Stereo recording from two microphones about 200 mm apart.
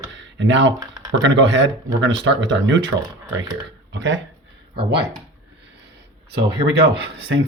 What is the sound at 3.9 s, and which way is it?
Speech, 65° right (ahead or behind).